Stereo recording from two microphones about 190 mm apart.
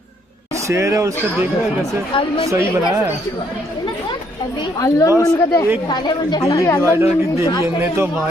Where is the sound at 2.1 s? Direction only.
25° left (ahead or behind).